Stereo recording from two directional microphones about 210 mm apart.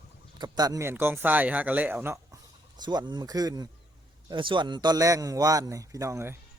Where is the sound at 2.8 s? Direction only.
20° right (ahead or behind).